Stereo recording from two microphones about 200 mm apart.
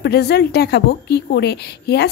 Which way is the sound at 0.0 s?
55° left (ahead or behind).